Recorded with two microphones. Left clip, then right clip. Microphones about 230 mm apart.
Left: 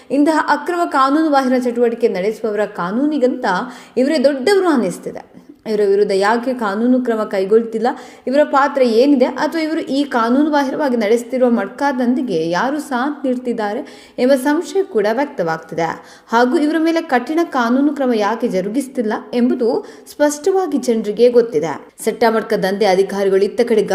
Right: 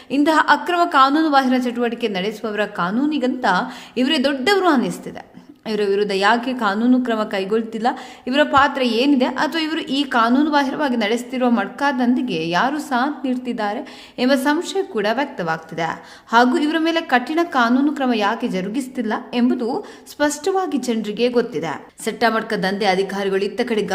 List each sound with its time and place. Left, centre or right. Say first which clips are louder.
0.1 s a woman's voice: left 1 dB; centre